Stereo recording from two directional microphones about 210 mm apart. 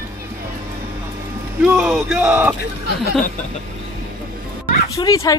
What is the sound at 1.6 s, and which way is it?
Speech, centre (ahead or behind).